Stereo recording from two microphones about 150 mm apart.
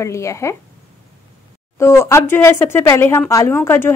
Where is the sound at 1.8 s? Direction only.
15° left (ahead or behind).